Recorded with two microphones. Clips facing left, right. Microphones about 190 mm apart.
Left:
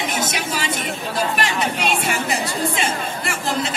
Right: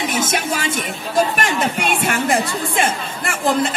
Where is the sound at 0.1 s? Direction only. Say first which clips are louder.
Right 3 dB; 50° right (ahead or behind).